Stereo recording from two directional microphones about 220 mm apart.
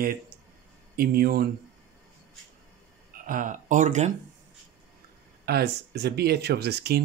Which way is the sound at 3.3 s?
35° right (ahead or behind).